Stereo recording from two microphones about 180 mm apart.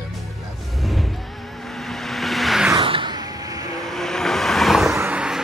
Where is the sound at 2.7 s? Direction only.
30° right (ahead or behind).